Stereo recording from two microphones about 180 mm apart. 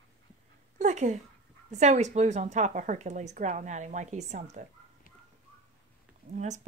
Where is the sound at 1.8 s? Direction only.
40° right (ahead or behind).